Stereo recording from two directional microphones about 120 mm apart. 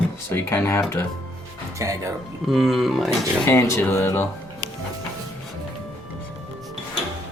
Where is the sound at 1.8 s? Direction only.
25° right (ahead or behind).